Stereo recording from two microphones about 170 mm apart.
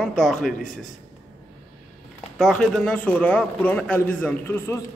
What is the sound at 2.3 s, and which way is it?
A man's voice, 5° left (ahead or behind).